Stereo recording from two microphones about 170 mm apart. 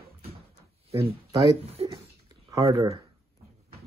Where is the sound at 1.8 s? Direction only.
35° right (ahead or behind).